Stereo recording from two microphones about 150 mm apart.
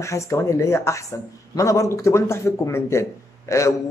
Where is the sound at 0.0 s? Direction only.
20° left (ahead or behind).